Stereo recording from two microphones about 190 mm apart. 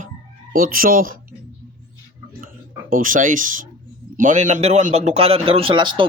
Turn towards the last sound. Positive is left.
turn(degrees=-25)  # may be behind; listen again after turning